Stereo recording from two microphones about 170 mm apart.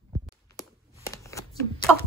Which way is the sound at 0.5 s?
20° left (ahead or behind).